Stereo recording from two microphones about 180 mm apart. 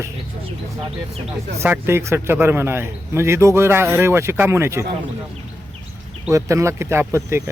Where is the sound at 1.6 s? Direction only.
15° right (ahead or behind).